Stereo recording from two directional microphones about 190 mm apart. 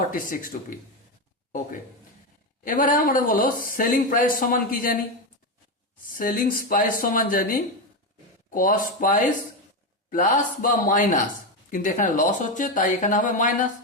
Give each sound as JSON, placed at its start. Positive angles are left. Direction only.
{"t": 0.1, "sound": "speech", "side_deg": 45}
{"t": 2.6, "sound": "speech", "side_deg": 45}
{"t": 6.1, "sound": "speech", "side_deg": 50}